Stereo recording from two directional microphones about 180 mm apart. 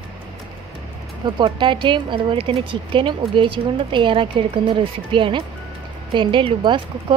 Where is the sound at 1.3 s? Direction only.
25° right (ahead or behind).